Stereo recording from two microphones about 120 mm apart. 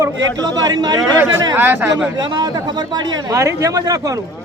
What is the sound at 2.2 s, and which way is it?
A man's voice, 35° right (ahead or behind).